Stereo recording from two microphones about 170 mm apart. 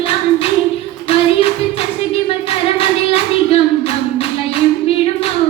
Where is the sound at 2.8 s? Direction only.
35° left (ahead or behind).